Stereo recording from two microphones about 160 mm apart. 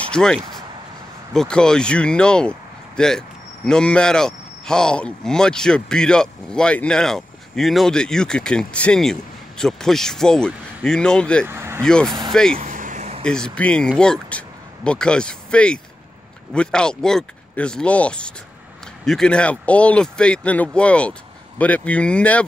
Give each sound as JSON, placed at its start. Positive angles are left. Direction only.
{"t": 0.1, "sound": "speech", "side_deg": 5}
{"t": 11.4, "sound": "vehicle", "side_deg": -15}
{"t": 11.8, "sound": "speech", "side_deg": 5}
{"t": 12.1, "sound": "speech", "side_deg": -25}
{"t": 12.6, "sound": "vehicle", "side_deg": -55}
{"t": 13.2, "sound": "speech", "side_deg": 5}